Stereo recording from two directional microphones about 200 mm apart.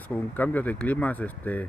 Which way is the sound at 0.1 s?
10° left (ahead or behind).